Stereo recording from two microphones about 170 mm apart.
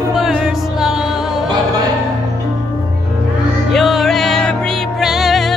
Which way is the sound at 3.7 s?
Centre (ahead or behind).